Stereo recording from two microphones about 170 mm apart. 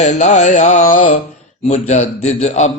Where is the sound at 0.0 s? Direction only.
45° left (ahead or behind).